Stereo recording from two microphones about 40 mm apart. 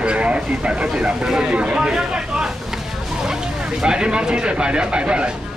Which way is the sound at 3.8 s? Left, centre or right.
Centre.